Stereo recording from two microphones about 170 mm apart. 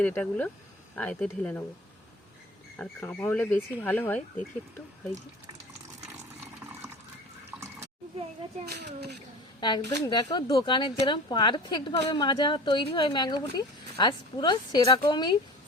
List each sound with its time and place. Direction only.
0.0 s speech: 10° left (ahead or behind)
2.7 s speech: 10° left (ahead or behind)
8.6 s a child's voice: 70° right (ahead or behind)
9.6 s a woman's voice: 25° left (ahead or behind)